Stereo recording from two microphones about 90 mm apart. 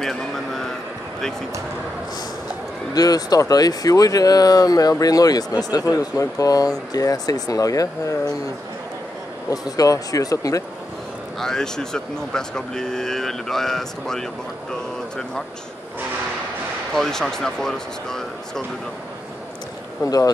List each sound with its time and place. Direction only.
0.0 s a man's voice: 5° left (ahead or behind)
2.9 s speech: 45° left (ahead or behind)
9.5 s speech: 45° left (ahead or behind)
11.3 s speech: 5° left (ahead or behind)
16.9 s speech: 5° left (ahead or behind)
20.1 s speech: 45° left (ahead or behind)